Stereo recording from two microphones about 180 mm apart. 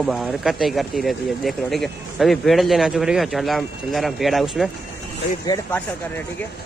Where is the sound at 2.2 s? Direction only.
Centre (ahead or behind).